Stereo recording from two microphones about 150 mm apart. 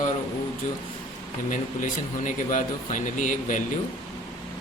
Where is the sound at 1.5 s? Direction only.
60° left (ahead or behind).